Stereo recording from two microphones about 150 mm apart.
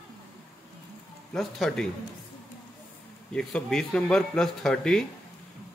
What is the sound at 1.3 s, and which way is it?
Speech, centre (ahead or behind).